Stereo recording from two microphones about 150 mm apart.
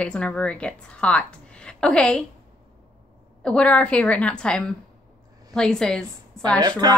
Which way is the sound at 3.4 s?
5° left (ahead or behind).